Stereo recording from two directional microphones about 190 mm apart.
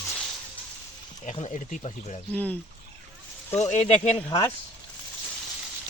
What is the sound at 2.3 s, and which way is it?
Speech, 10° left (ahead or behind).